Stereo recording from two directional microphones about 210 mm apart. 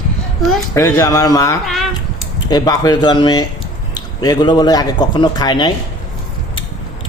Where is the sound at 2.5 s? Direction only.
20° left (ahead or behind).